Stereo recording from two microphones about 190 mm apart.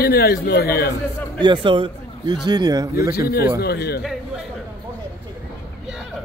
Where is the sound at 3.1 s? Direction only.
55° left (ahead or behind).